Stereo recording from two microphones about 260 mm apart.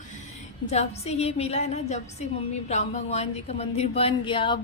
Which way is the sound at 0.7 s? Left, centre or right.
Left.